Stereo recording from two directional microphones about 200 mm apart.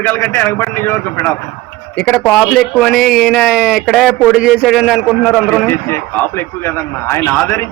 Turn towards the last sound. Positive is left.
turn(degrees=10)  # may be behind; listen again after turning